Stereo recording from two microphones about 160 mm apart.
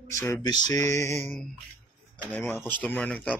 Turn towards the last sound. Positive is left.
turn(degrees=10)  # may be behind; listen again after turning